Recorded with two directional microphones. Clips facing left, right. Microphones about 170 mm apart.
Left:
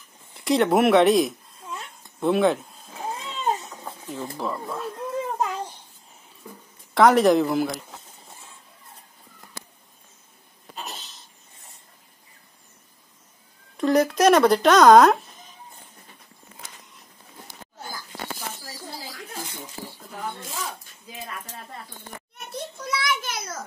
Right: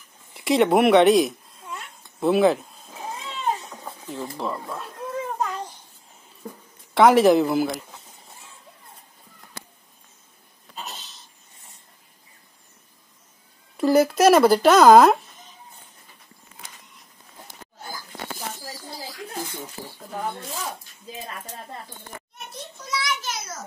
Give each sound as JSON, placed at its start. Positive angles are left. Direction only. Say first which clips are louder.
{"t": 0.3, "sound": "speech", "louder": "right 1 dB", "side_deg": 0}
{"t": 2.1, "sound": "a sound", "louder": "right 2 dB", "side_deg": -5}
{"t": 4.0, "sound": "speech", "louder": "even", "side_deg": 0}
{"t": 6.9, "sound": "speech", "louder": "right 1 dB", "side_deg": 0}
{"t": 13.7, "sound": "speech", "louder": "right 2 dB", "side_deg": -5}
{"t": 22.8, "sound": "a sound", "louder": "even", "side_deg": 55}